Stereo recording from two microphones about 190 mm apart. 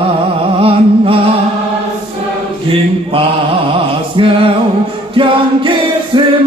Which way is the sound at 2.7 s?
30° right (ahead or behind).